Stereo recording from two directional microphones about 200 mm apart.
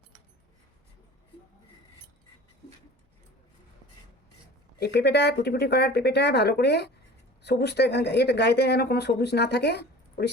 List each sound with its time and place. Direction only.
4.8 s speech: 55° left (ahead or behind)